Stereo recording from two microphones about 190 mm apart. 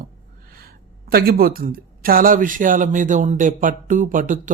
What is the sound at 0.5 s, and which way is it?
A woman's voice, 50° right (ahead or behind).